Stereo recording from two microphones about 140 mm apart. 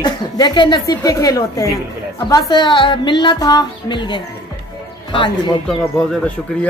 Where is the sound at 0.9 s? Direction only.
25° left (ahead or behind).